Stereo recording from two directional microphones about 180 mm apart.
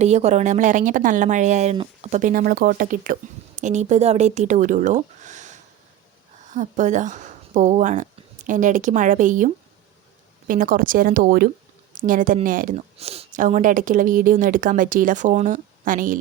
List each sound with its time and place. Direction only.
0.0 s speech: 40° right (ahead or behind)
12.7 s speech: 35° right (ahead or behind); by 16.1 s 50° right (ahead or behind)